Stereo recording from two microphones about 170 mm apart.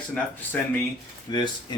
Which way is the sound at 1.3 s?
25° left (ahead or behind).